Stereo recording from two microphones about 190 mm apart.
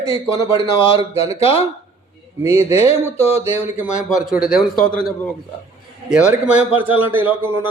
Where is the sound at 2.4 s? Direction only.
15° right (ahead or behind).